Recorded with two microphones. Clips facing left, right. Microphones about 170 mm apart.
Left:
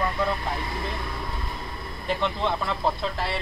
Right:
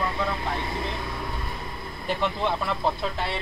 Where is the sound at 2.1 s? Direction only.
5° right (ahead or behind).